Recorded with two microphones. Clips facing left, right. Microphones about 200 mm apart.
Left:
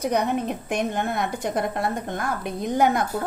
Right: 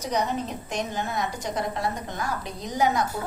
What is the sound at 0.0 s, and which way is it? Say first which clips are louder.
A woman's voice: left 4 dB; 55° left (ahead or behind).